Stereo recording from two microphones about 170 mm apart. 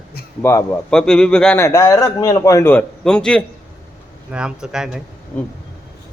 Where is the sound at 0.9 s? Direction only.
5° left (ahead or behind).